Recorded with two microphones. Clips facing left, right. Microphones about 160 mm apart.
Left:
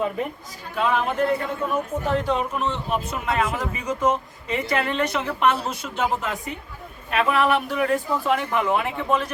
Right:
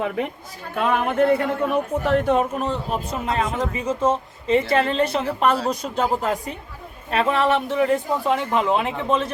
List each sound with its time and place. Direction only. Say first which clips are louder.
0.8 s a man's voice: right 2 dB; 55° right (ahead or behind); by 9.3 s 20° right (ahead or behind)